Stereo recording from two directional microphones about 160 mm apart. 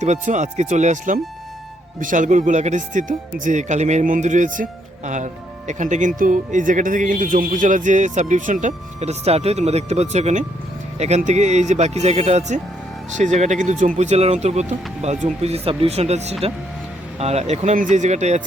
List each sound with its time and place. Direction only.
0.0 s speech: 50° right (ahead or behind)